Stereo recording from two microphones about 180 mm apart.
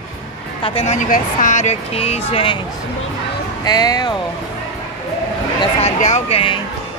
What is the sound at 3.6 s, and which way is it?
Speech, 20° left (ahead or behind).